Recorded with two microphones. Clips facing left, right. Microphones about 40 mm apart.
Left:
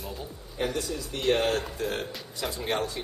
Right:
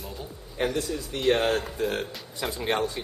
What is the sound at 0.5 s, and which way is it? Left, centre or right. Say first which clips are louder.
A man's voice: right 3 dB; right.